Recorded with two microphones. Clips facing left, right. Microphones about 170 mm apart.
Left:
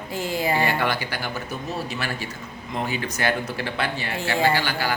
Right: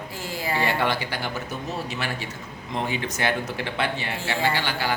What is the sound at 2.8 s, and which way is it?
Speech, 20° right (ahead or behind).